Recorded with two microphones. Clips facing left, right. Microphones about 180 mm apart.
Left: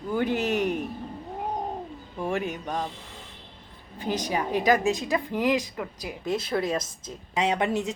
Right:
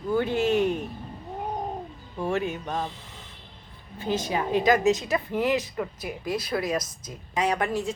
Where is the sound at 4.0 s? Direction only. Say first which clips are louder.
Right 1 dB; 15° left (ahead or behind).